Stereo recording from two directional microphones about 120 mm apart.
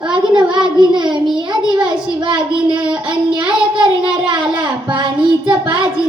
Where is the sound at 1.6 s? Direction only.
5° right (ahead or behind).